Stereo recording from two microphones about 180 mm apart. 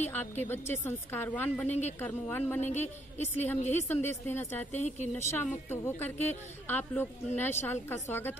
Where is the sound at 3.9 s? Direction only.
10° left (ahead or behind).